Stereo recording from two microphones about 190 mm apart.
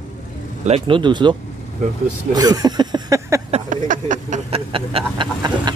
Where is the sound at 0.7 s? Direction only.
30° right (ahead or behind).